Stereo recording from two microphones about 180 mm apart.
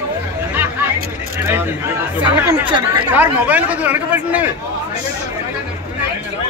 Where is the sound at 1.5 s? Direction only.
10° right (ahead or behind).